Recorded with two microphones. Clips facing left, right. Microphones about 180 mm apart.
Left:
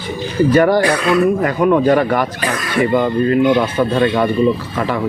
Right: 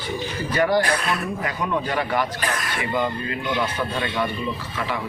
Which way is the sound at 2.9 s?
75° left (ahead or behind).